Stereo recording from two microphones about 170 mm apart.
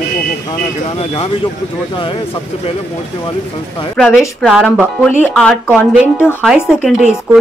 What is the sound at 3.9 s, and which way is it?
Speech, 5° left (ahead or behind).